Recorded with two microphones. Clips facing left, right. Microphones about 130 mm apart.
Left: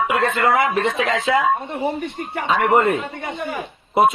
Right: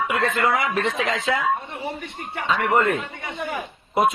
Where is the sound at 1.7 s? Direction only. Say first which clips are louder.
Left 8 dB; 35° left (ahead or behind).